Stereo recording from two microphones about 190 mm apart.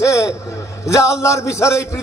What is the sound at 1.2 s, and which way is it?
Speech, 15° left (ahead or behind).